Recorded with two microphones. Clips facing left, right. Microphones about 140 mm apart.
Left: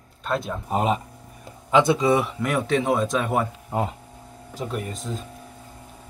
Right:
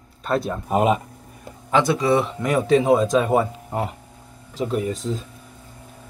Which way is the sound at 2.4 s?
Centre (ahead or behind).